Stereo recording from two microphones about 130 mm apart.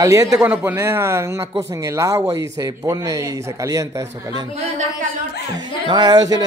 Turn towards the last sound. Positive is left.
turn(degrees=-35)  # may be behind; listen again after turning